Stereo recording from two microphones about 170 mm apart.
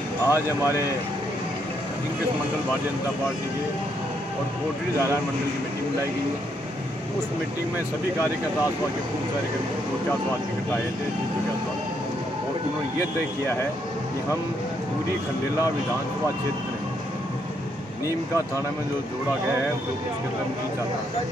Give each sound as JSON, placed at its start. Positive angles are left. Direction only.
{"t": 0.3, "sound": "speech", "side_deg": -15}